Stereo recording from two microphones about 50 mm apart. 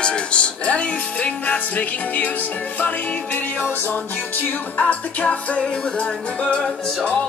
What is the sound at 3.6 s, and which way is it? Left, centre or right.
Music, left.